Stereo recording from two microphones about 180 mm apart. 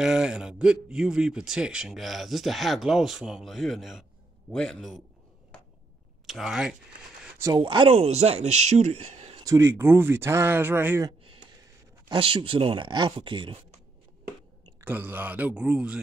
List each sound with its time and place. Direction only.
0.0 s speech: 5° right (ahead or behind)
6.2 s speech: centre (ahead or behind)
7.5 s speech: 30° right (ahead or behind)
9.4 s speech: 15° right (ahead or behind)
12.1 s speech: 30° right (ahead or behind)
14.8 s speech: 10° right (ahead or behind)